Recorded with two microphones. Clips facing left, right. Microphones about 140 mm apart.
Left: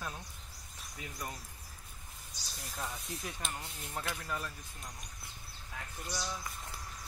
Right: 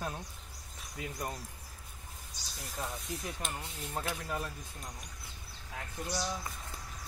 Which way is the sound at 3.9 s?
25° right (ahead or behind).